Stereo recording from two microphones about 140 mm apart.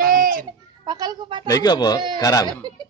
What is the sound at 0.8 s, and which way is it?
Speech, 30° right (ahead or behind).